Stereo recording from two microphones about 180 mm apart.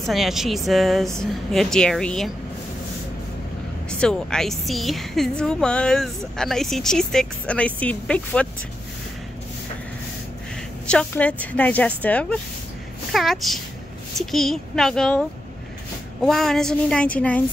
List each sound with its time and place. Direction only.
0.0 s a woman's voice: centre (ahead or behind)
4.0 s a woman's voice: 5° left (ahead or behind)
10.9 s a woman's voice: 5° left (ahead or behind)